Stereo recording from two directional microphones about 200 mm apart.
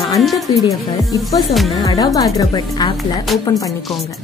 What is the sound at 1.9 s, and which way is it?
Speech, 15° left (ahead or behind).